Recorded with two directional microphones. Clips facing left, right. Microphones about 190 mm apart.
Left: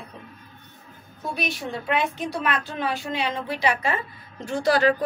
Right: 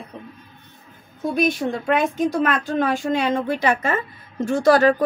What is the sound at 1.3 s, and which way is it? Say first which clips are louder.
Speech: right 10 dB; 50° right (ahead or behind).